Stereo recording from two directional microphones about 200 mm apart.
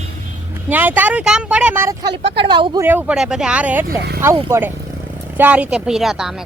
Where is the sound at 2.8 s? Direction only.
5° right (ahead or behind).